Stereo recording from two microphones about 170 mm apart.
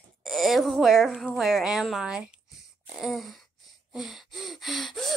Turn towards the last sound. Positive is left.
turn(degrees=0)  # may be behind; listen again after turning